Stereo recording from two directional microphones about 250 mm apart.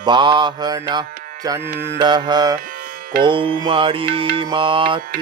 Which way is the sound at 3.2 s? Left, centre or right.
Centre.